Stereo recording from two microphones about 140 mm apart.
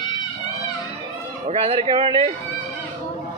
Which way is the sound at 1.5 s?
45° right (ahead or behind).